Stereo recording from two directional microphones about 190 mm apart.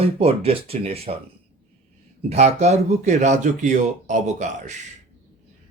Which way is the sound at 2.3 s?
35° right (ahead or behind).